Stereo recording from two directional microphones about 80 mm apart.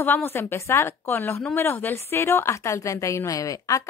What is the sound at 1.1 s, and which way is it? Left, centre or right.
A woman's voice, left.